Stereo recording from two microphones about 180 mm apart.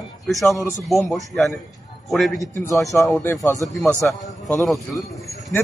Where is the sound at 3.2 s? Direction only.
15° left (ahead or behind).